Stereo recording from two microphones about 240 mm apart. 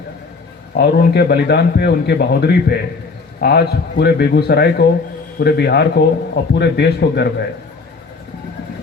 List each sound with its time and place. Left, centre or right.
0.7 s a man's voice: left